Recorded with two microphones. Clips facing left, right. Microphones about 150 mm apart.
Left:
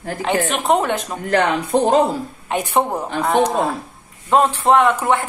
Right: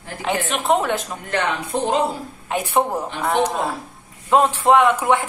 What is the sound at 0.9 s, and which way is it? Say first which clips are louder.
Speech: left 6 dB; 40° left (ahead or behind).